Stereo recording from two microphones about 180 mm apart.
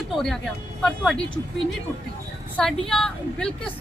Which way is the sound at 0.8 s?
5° left (ahead or behind).